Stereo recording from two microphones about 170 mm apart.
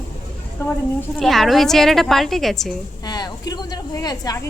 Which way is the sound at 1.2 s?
Centre (ahead or behind).